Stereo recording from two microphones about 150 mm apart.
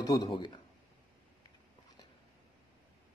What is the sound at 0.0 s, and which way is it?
Speech, 30° left (ahead or behind).